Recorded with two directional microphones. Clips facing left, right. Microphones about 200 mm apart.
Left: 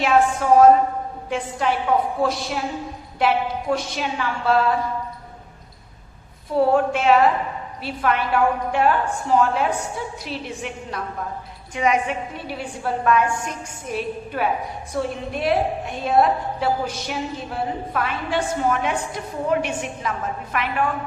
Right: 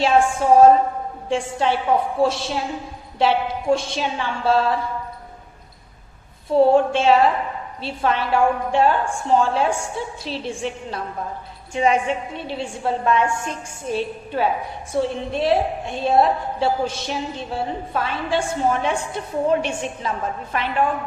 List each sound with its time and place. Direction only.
0.0 s a woman's voice: 30° right (ahead or behind)
6.6 s a woman's voice: 30° right (ahead or behind)